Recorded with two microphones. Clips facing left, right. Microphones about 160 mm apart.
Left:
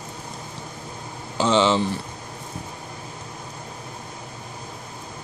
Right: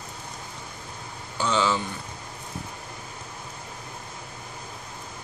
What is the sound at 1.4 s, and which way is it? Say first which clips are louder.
Speech: left 6 dB; 25° left (ahead or behind).